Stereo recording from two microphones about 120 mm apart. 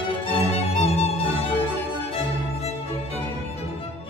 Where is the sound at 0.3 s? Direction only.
60° left (ahead or behind).